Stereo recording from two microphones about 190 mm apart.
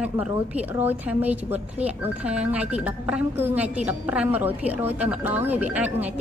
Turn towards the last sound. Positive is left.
turn(degrees=-10)  # may be behind; listen again after turning